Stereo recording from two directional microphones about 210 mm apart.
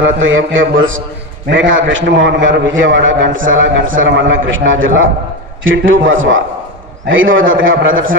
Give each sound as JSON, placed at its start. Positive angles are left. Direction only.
{"t": 0.2, "sound": "a man's voice", "side_deg": -65}